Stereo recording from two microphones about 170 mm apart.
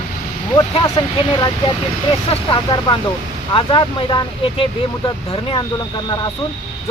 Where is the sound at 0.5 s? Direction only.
30° left (ahead or behind).